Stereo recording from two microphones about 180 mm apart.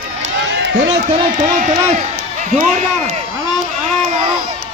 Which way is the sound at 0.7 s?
45° right (ahead or behind).